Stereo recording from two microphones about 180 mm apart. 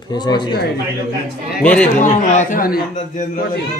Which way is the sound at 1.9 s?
45° left (ahead or behind).